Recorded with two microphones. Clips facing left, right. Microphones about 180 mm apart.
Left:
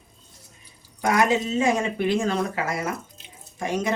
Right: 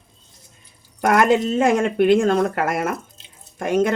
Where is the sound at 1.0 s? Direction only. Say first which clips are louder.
Right 5 dB; 60° right (ahead or behind).